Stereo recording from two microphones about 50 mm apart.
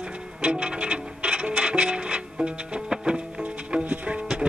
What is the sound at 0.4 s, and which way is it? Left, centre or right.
Music, right.